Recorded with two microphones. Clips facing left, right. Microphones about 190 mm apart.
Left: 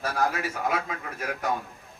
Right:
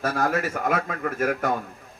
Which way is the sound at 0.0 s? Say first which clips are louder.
Right 3 dB; 50° right (ahead or behind).